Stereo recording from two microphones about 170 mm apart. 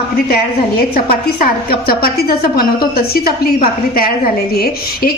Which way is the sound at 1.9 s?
60° left (ahead or behind).